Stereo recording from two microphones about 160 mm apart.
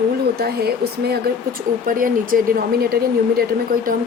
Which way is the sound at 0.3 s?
75° right (ahead or behind).